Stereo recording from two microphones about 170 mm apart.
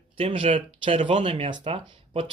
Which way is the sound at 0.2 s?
30° right (ahead or behind).